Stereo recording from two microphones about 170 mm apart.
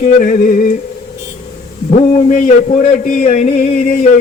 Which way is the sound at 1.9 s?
45° left (ahead or behind).